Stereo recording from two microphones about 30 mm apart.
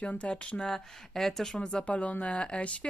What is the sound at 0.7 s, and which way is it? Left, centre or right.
Speech, centre.